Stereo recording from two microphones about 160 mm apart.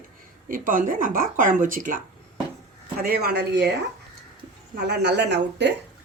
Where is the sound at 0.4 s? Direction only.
60° right (ahead or behind).